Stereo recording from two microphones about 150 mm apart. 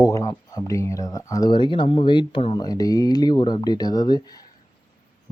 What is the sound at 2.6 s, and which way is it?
Speech, 25° left (ahead or behind).